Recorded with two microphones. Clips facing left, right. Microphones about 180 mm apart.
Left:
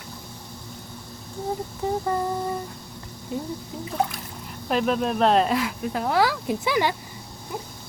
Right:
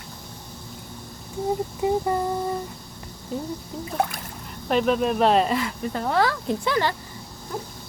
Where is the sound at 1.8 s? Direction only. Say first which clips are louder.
Right 4 dB; 15° right (ahead or behind).